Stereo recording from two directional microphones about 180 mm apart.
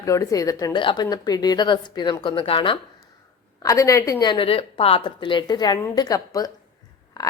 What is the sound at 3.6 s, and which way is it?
A woman's voice, 15° left (ahead or behind).